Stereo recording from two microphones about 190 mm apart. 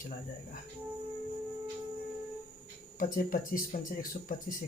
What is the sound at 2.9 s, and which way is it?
Speech, 50° left (ahead or behind).